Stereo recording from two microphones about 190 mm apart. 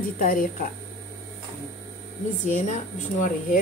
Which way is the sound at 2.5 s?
45° left (ahead or behind).